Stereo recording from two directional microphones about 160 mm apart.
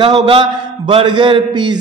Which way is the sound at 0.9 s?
30° right (ahead or behind).